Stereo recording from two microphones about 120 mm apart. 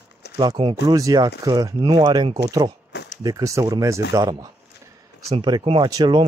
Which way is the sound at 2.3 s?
35° right (ahead or behind).